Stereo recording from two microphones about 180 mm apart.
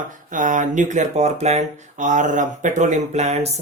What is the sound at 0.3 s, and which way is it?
Speech, 45° right (ahead or behind).